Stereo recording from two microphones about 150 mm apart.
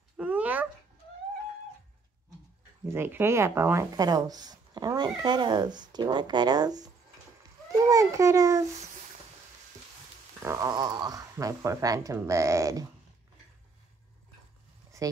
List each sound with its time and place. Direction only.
0.2 s dog: 10° right (ahead or behind)
2.9 s a child's voice: 15° right (ahead or behind)
10.4 s speech: 20° right (ahead or behind)
15.0 s a sound: 20° right (ahead or behind)